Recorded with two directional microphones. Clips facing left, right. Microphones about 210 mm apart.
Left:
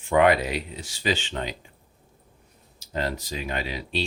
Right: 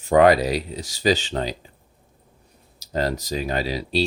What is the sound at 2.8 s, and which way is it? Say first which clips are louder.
Speech: right 5 dB; 40° right (ahead or behind).